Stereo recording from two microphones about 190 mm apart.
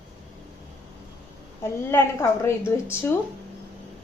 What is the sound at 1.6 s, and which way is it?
A woman's voice, 15° left (ahead or behind).